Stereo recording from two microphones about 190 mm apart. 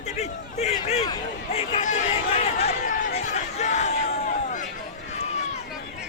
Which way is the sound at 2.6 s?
40° left (ahead or behind).